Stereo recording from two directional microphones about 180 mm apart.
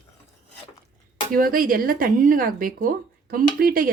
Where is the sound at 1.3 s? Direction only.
55° right (ahead or behind).